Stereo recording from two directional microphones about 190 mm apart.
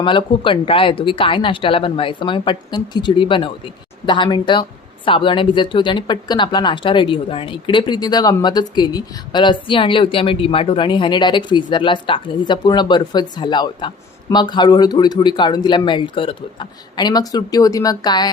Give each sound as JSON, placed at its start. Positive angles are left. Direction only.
{"t": 0.0, "sound": "speech", "side_deg": 25}